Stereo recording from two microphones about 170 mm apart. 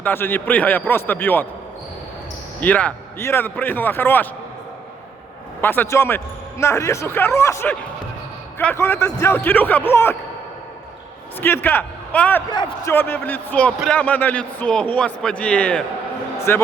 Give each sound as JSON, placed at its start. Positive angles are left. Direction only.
{"t": 0.0, "sound": "a man's voice", "side_deg": 10}
{"t": 2.6, "sound": "a man's voice", "side_deg": 10}
{"t": 5.6, "sound": "a man's voice", "side_deg": 10}
{"t": 11.3, "sound": "a man's voice", "side_deg": 10}
{"t": 12.5, "sound": "a man's voice", "side_deg": 25}
{"t": 12.9, "sound": "a man's voice", "side_deg": 10}